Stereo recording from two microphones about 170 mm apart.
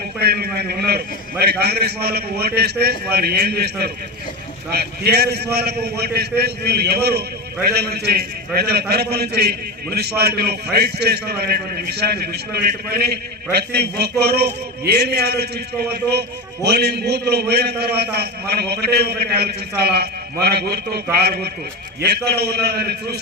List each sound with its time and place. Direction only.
0.2 s a man's voice: 70° right (ahead or behind)